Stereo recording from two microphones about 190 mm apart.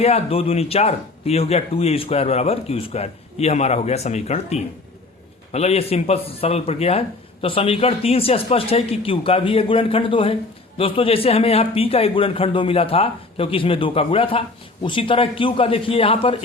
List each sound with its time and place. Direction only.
0.0 s a man's voice: 30° left (ahead or behind)